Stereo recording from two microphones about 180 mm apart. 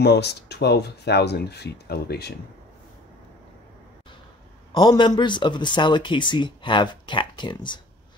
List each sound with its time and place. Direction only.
0.0 s speech: 65° left (ahead or behind)
4.7 s speech: 25° left (ahead or behind)